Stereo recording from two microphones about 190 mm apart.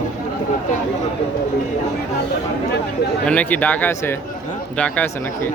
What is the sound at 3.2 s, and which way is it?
Speech, 5° left (ahead or behind).